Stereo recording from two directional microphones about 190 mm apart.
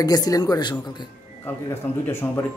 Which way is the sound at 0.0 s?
20° left (ahead or behind).